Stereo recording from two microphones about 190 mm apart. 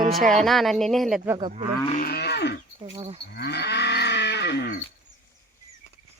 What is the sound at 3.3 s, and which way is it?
Cattle, 60° left (ahead or behind).